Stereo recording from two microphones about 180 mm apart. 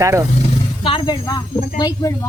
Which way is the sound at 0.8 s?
25° left (ahead or behind).